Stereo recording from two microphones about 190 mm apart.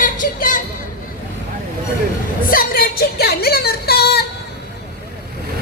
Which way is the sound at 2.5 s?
50° left (ahead or behind).